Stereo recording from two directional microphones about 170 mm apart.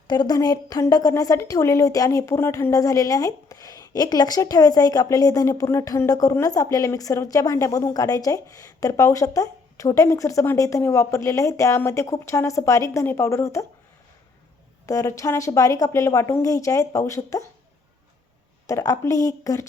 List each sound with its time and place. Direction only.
0.1 s a woman's voice: 25° left (ahead or behind)
14.8 s a woman's voice: 20° left (ahead or behind)
18.7 s a woman's voice: 20° left (ahead or behind)